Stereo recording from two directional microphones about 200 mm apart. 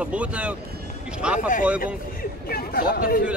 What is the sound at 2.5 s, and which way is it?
Speech, 50° left (ahead or behind).